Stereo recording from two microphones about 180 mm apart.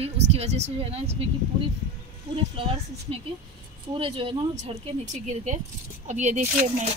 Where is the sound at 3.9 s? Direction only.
30° right (ahead or behind).